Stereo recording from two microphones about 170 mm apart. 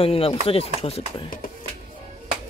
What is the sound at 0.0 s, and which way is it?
Speech, 35° left (ahead or behind).